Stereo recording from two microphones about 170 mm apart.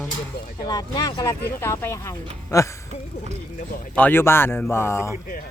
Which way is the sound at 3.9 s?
10° left (ahead or behind).